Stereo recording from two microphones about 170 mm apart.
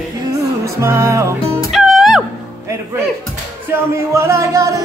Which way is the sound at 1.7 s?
Centre (ahead or behind).